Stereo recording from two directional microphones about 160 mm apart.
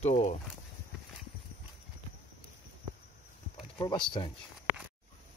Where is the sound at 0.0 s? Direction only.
45° left (ahead or behind).